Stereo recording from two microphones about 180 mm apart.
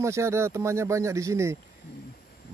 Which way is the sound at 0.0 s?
15° right (ahead or behind).